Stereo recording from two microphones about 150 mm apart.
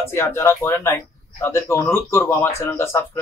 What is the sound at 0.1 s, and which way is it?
A man's voice, 15° left (ahead or behind).